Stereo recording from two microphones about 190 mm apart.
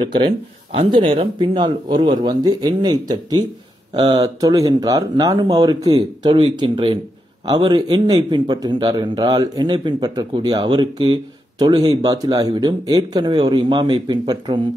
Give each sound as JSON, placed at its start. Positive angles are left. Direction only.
{"t": 0.7, "sound": "a man's voice", "side_deg": -30}